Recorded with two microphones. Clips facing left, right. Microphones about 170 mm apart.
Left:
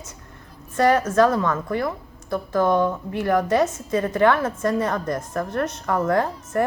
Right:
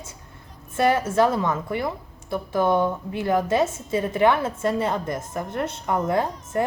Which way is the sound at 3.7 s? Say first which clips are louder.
Left 2 dB; 10° right (ahead or behind).